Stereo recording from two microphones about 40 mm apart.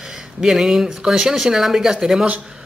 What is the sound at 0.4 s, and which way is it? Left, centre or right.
Speech, centre.